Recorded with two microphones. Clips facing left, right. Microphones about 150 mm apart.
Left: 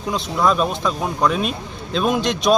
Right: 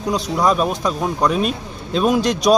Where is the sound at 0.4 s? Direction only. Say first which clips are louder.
Even; 10° right (ahead or behind).